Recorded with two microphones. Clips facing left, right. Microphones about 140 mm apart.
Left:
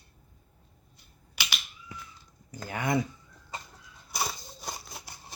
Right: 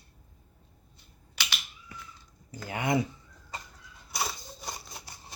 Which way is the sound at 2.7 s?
20° right (ahead or behind).